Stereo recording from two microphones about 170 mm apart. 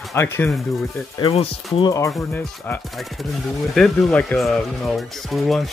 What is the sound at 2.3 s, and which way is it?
Speech, 15° left (ahead or behind).